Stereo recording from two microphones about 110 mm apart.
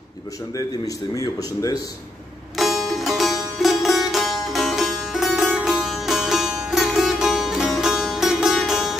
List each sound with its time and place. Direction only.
0.6 s speech: 30° left (ahead or behind)
2.5 s music: centre (ahead or behind)